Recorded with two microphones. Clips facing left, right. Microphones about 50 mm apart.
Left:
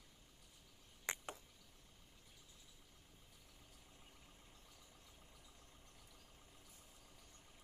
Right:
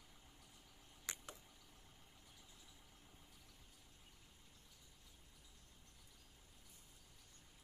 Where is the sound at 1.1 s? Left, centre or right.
Left.